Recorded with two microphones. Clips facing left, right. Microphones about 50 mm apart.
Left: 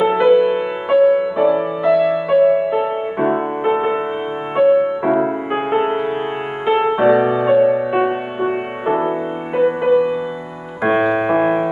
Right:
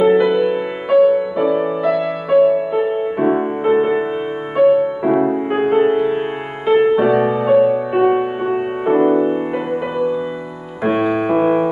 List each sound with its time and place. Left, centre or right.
0.0 s music: centre
9.0 s music: centre
10.9 s music: centre